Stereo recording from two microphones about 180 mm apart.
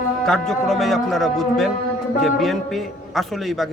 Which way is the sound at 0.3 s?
Centre (ahead or behind).